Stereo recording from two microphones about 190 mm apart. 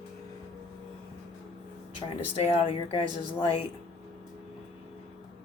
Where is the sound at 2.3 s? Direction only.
30° left (ahead or behind).